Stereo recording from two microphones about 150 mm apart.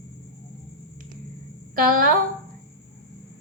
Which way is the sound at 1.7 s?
70° right (ahead or behind).